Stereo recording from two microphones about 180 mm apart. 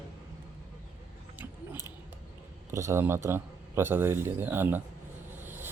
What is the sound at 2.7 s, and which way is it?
A man's voice, 15° right (ahead or behind).